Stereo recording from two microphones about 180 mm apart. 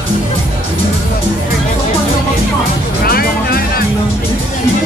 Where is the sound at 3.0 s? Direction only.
55° left (ahead or behind).